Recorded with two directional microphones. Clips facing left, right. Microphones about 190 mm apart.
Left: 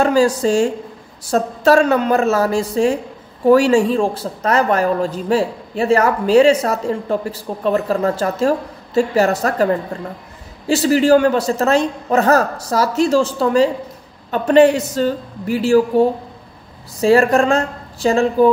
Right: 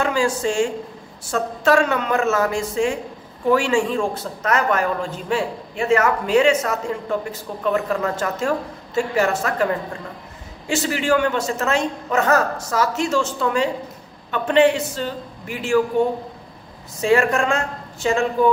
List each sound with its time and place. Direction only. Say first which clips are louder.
0.0 s a woman's voice: left 6 dB; 35° left (ahead or behind)
10.7 s a woman's voice: left 8 dB; 35° left (ahead or behind)